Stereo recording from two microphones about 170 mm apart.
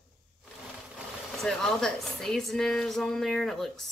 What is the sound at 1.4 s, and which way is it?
Speech, 5° left (ahead or behind).